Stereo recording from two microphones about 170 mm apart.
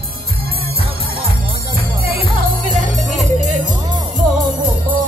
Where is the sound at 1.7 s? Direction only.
60° right (ahead or behind).